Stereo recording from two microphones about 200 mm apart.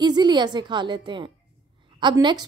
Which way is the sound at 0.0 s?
20° right (ahead or behind).